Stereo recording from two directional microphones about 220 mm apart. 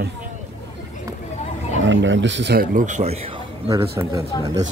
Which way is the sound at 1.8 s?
55° right (ahead or behind).